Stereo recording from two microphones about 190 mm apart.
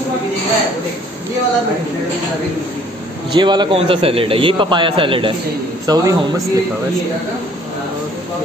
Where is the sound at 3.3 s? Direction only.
25° right (ahead or behind).